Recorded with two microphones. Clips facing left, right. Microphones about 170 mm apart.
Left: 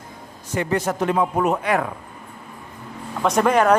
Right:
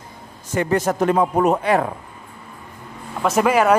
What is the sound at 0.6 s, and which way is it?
Speech, 45° right (ahead or behind).